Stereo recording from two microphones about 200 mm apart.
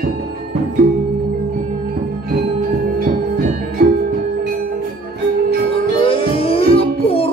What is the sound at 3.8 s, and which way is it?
Music, 50° right (ahead or behind).